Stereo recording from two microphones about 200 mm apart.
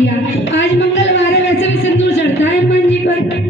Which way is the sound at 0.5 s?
65° left (ahead or behind).